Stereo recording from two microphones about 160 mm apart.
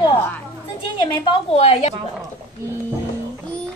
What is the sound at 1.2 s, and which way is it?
Speech, 35° left (ahead or behind).